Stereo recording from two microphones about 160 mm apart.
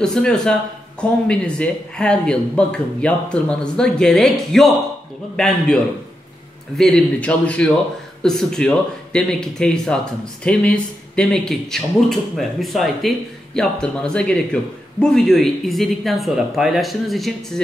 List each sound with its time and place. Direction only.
0.0 s a man's voice: 5° left (ahead or behind)
6.8 s a man's voice: 5° left (ahead or behind)